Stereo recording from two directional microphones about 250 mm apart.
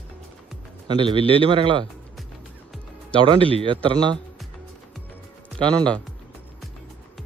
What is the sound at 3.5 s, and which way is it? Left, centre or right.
Speech, centre.